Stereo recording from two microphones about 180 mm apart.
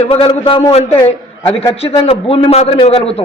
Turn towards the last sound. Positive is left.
turn(degrees=35)  # may be behind; listen again after turning